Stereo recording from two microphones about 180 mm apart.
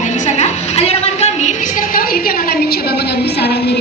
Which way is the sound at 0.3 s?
35° left (ahead or behind).